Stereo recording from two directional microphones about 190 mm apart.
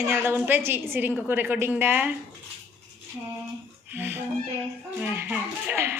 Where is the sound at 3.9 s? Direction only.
10° right (ahead or behind).